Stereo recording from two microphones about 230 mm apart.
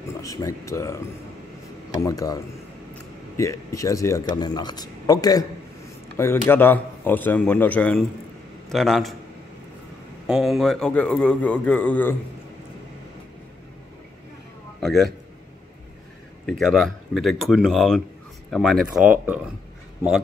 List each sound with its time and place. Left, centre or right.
0.2 s a man's voice: centre
10.2 s a man's voice: centre
14.8 s a man's voice: centre
16.4 s a man's voice: centre